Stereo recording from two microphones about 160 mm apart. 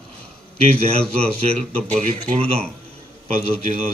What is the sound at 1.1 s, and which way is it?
Speech, 40° right (ahead or behind).